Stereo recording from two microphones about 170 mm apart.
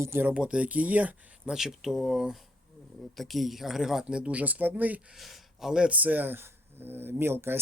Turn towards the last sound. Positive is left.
turn(degrees=-15)  # may be behind; listen again after turning